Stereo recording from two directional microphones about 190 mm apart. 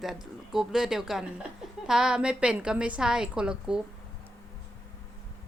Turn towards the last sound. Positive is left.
turn(degrees=-5)  # may be behind; listen again after turning